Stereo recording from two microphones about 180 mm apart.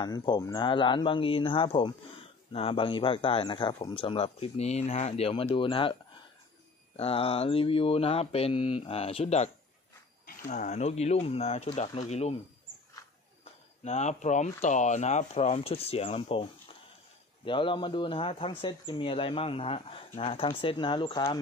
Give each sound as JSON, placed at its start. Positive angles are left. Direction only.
{"t": 0.0, "sound": "speech", "side_deg": 25}
{"t": 4.0, "sound": "mantra", "side_deg": 30}
{"t": 7.0, "sound": "mantra", "side_deg": 30}
{"t": 10.2, "sound": "mantra", "side_deg": 45}
{"t": 13.4, "sound": "a sound", "side_deg": 35}
{"t": 14.6, "sound": "mantra", "side_deg": 40}
{"t": 17.5, "sound": "speech", "side_deg": 25}